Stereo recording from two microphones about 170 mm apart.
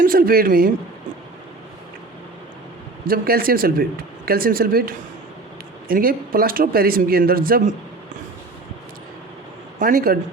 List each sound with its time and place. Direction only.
0.0 s speech: 60° right (ahead or behind)
3.1 s speech: 60° right (ahead or behind)
9.7 s speech: 55° right (ahead or behind)